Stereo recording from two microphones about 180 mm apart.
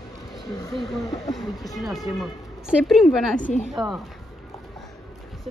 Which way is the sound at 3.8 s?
25° right (ahead or behind).